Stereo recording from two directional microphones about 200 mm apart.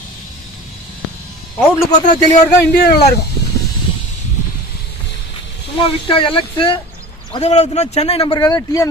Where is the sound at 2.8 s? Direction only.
50° left (ahead or behind).